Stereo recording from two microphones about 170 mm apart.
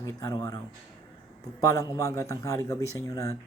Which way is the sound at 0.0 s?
20° left (ahead or behind).